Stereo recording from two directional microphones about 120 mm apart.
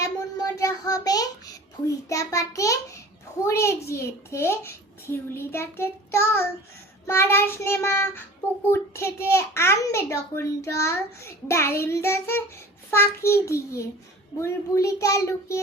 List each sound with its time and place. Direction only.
0.6 s child singing: 30° left (ahead or behind)
2.0 s a child's voice: 25° left (ahead or behind)